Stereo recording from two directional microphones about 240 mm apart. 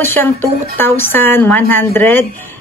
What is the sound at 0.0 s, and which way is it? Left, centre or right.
Speech, centre.